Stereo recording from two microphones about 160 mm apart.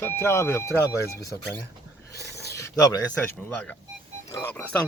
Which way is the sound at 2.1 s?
20° left (ahead or behind).